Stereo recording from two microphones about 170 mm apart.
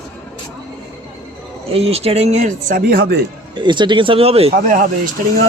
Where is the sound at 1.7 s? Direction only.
35° right (ahead or behind); by 3.2 s 65° right (ahead or behind).